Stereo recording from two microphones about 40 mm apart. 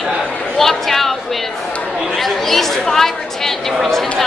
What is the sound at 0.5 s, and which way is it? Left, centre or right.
Speech, centre.